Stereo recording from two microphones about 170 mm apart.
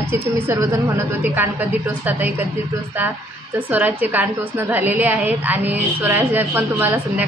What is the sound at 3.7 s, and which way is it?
A woman's voice, 10° right (ahead or behind).